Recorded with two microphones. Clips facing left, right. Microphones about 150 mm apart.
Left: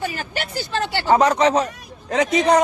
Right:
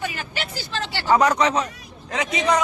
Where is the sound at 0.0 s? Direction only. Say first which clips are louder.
Left 3 dB; 40° left (ahead or behind).